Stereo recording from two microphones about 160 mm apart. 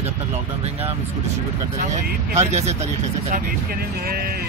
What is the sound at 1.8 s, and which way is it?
Speech, 50° right (ahead or behind).